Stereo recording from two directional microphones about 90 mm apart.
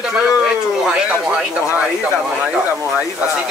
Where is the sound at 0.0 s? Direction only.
5° right (ahead or behind).